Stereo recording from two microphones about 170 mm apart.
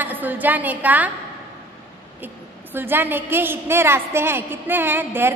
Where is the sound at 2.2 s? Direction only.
10° right (ahead or behind).